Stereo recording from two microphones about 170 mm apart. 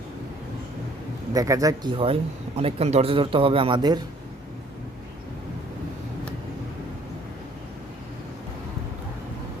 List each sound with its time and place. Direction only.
1.3 s speech: 20° right (ahead or behind)